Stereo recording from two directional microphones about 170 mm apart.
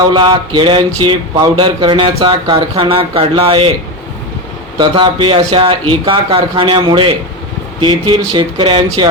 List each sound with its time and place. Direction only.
0.1 s speech: 30° right (ahead or behind)
4.8 s speech: 30° right (ahead or behind)